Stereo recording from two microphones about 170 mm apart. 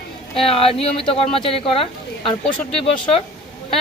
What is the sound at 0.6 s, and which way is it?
Speech, 35° left (ahead or behind).